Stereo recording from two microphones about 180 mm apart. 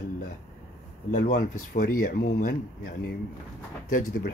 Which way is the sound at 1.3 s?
55° left (ahead or behind).